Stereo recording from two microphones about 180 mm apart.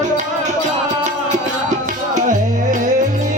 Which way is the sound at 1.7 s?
45° right (ahead or behind).